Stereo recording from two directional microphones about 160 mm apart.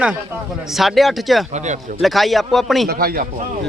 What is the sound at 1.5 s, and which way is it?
Speech, 45° right (ahead or behind).